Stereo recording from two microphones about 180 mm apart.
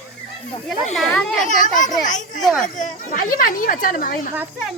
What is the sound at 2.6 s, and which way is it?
Speech, 45° left (ahead or behind).